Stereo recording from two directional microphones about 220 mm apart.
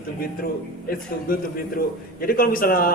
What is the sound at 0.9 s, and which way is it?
A man's voice, 40° left (ahead or behind).